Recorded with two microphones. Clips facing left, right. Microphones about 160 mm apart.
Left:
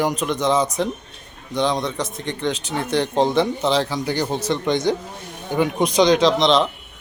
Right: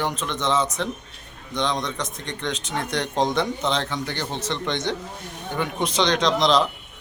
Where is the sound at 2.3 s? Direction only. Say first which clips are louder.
Left 6 dB; 5° left (ahead or behind).